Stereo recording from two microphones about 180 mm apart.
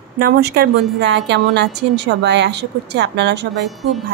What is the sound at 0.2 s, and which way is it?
A woman's voice, 60° right (ahead or behind).